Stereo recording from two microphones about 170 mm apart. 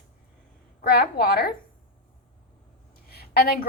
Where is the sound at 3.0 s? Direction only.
65° left (ahead or behind).